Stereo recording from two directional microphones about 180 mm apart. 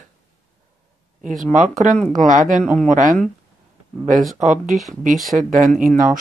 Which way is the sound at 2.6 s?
Centre (ahead or behind).